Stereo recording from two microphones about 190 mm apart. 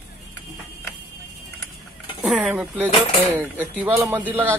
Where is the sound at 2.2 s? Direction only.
5° right (ahead or behind).